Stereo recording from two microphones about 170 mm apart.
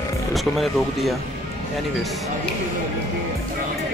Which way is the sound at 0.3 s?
Centre (ahead or behind).